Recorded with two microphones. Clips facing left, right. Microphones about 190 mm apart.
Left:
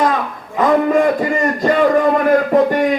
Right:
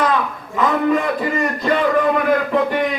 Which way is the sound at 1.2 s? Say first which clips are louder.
Left 4 dB; 45° left (ahead or behind).